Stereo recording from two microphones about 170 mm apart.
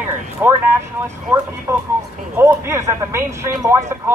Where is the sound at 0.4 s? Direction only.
10° right (ahead or behind).